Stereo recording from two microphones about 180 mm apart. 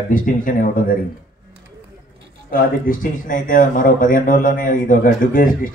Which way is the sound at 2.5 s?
50° left (ahead or behind).